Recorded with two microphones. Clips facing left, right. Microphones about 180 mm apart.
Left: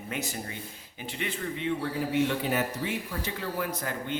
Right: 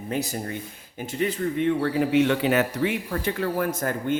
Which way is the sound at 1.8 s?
90° right.